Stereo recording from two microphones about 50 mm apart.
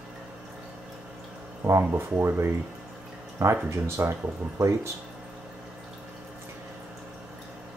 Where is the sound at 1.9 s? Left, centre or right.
Right.